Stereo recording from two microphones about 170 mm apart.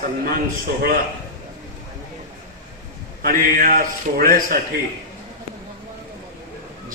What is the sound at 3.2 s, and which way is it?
Speech, 55° right (ahead or behind).